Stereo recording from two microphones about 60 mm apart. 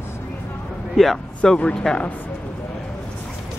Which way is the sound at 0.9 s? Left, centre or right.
Centre.